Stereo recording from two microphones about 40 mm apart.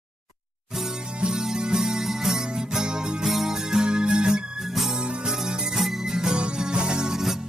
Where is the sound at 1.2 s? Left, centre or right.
Centre.